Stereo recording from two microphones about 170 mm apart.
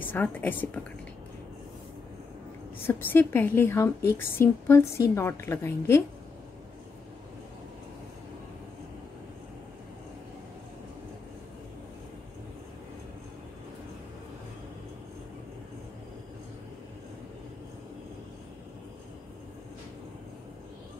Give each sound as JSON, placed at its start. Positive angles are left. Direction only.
{"t": 0.0, "sound": "a woman's voice", "side_deg": 10}
{"t": 2.9, "sound": "a woman's voice", "side_deg": 10}